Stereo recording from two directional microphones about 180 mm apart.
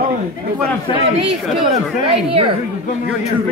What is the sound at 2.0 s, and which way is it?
Speech, 30° right (ahead or behind).